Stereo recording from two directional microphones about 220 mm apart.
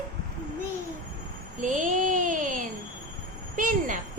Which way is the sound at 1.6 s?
35° right (ahead or behind).